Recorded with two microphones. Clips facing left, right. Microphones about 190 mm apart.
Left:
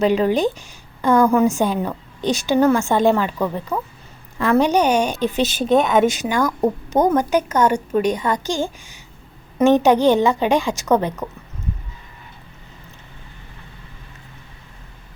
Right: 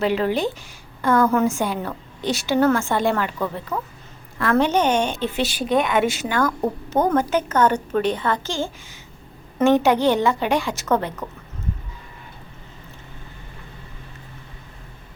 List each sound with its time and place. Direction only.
0.0 s a woman's voice: 15° left (ahead or behind)
5.4 s a woman's voice: 20° left (ahead or behind)